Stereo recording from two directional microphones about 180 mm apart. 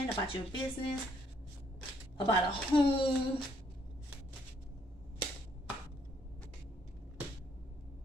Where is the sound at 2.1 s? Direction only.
30° left (ahead or behind).